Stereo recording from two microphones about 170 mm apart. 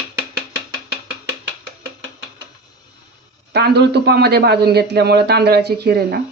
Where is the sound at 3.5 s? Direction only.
75° right (ahead or behind).